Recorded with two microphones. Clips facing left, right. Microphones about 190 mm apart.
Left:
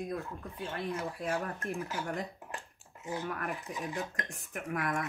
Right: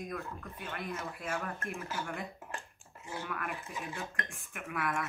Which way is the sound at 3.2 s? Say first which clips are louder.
Left 3 dB; 40° left (ahead or behind).